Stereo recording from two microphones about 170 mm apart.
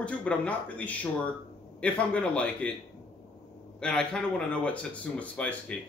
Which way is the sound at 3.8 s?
5° left (ahead or behind).